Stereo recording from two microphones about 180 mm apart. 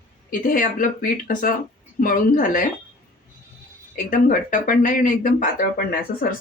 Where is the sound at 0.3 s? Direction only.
50° left (ahead or behind).